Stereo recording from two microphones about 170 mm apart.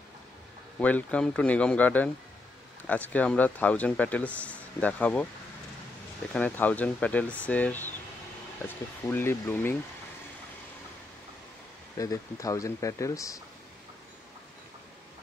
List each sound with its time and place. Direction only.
0.7 s speech: 10° left (ahead or behind)
6.3 s speech: 10° left (ahead or behind)
12.0 s speech: 20° left (ahead or behind)